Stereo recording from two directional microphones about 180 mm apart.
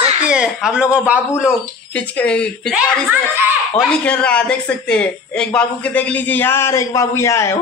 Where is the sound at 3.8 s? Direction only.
5° left (ahead or behind).